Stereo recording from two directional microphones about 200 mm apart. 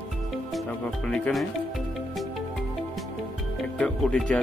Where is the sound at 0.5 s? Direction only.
Centre (ahead or behind).